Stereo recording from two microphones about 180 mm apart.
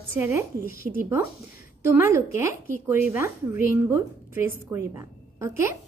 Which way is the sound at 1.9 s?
15° right (ahead or behind).